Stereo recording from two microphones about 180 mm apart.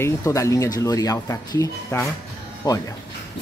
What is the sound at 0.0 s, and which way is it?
Speech, 15° left (ahead or behind).